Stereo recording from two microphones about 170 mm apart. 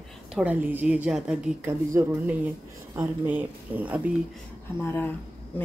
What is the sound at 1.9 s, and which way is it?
A woman's voice, 15° right (ahead or behind).